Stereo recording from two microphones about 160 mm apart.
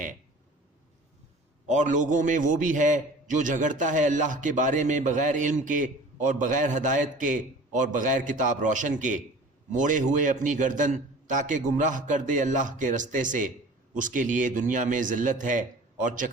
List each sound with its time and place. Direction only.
1.6 s a man's voice: 50° right (ahead or behind)